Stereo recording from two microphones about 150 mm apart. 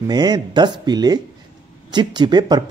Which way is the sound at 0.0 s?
25° right (ahead or behind).